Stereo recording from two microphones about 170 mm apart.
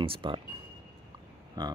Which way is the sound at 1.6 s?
25° right (ahead or behind).